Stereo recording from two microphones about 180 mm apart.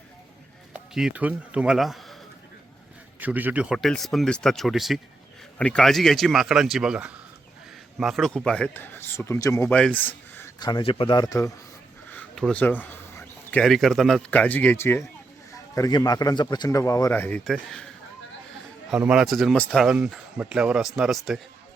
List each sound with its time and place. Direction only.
0.7 s speech: 5° right (ahead or behind)
3.2 s speech: 10° right (ahead or behind); by 11.5 s 20° left (ahead or behind)
12.0 s a man's voice: 5° left (ahead or behind)
18.9 s speech: 5° right (ahead or behind)